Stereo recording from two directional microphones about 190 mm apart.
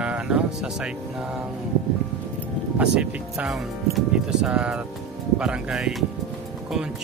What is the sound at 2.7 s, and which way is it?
Speech, 5° right (ahead or behind).